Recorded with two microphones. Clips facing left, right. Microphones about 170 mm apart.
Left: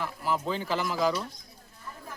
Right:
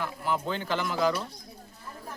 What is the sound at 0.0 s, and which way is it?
A man's voice, centre (ahead or behind).